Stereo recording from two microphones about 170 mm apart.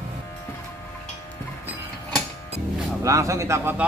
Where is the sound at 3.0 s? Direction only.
20° right (ahead or behind).